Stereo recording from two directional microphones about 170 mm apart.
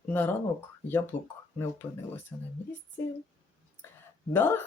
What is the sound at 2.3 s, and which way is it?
Speech, 15° left (ahead or behind).